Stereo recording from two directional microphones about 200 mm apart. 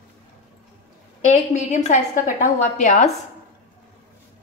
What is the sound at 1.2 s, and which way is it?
A woman's voice, 35° left (ahead or behind).